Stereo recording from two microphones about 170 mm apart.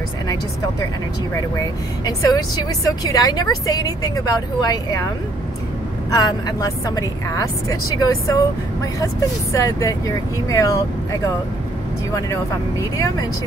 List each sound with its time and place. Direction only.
2.0 s a woman's voice: 20° left (ahead or behind)
6.0 s a woman's voice: 20° left (ahead or behind)